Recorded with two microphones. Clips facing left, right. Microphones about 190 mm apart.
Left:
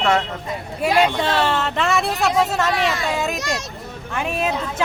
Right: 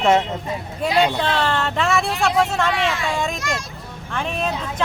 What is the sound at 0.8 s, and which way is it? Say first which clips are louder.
Speech: left 1 dB; 5° left (ahead or behind).